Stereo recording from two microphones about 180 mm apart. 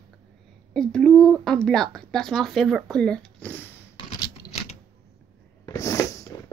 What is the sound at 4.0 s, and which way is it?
Scissors, 30° left (ahead or behind).